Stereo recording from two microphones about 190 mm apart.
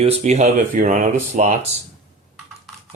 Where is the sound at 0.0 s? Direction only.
35° right (ahead or behind).